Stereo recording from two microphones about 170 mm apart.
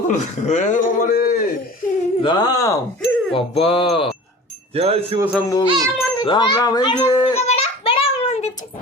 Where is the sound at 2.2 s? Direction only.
25° left (ahead or behind).